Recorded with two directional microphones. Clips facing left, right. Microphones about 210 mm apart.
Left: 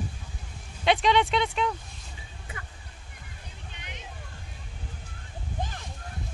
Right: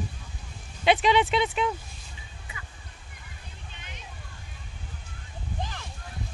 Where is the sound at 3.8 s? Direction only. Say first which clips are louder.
Left 3 dB; 20° left (ahead or behind).